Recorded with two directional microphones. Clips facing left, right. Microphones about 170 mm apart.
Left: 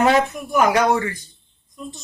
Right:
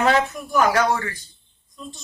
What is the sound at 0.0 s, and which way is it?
Speech, 20° left (ahead or behind).